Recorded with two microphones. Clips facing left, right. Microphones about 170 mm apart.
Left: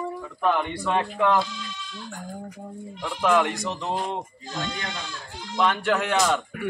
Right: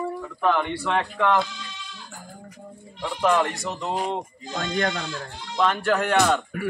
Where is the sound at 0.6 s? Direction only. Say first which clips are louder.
Even; 10° left (ahead or behind).